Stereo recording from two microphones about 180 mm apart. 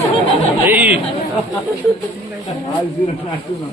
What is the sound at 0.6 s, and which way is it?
Chatter, 10° right (ahead or behind).